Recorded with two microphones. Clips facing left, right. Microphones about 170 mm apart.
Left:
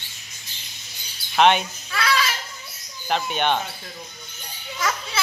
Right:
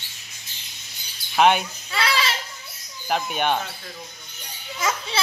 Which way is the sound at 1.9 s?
25° right (ahead or behind).